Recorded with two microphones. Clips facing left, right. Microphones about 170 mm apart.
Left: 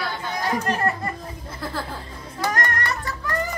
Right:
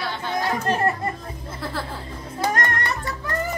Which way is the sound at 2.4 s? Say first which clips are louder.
Right 1 dB; 20° right (ahead or behind).